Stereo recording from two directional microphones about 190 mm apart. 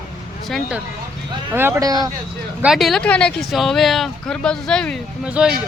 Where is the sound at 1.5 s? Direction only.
15° right (ahead or behind).